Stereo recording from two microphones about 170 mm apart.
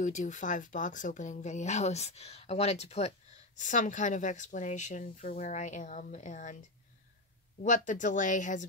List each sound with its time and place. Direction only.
0.0 s speech: 45° left (ahead or behind)
7.6 s speech: 50° left (ahead or behind)